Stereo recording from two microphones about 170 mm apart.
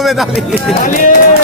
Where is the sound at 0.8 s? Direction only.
50° left (ahead or behind).